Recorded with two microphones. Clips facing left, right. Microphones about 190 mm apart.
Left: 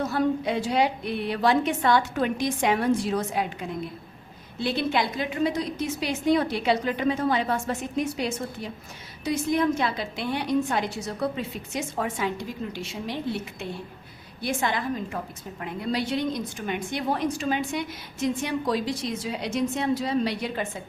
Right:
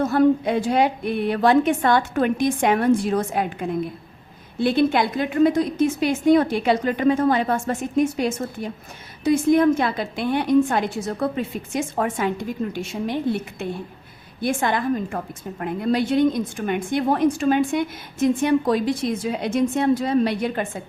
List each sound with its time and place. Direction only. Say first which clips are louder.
0.0 s a woman's voice: right 7 dB; 50° right (ahead or behind)